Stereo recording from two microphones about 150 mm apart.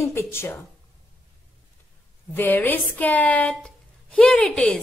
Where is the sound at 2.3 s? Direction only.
10° left (ahead or behind).